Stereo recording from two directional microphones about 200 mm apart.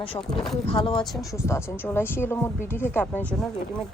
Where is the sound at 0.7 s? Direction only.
25° left (ahead or behind).